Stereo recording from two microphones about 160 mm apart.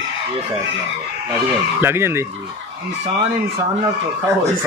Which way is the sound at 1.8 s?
15° right (ahead or behind).